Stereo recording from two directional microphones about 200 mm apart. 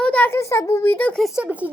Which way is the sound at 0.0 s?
5° left (ahead or behind).